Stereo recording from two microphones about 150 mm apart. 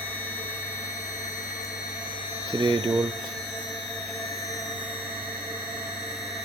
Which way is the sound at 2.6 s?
30° right (ahead or behind).